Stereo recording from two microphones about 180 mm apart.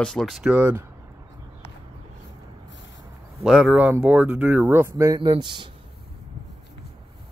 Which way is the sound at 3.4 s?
5° right (ahead or behind).